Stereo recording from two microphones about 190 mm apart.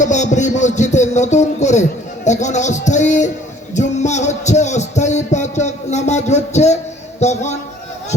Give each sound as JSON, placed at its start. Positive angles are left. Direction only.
{"t": 0.0, "sound": "a man's voice", "side_deg": 40}
{"t": 3.8, "sound": "heart murmur", "side_deg": 40}
{"t": 7.2, "sound": "speech", "side_deg": 35}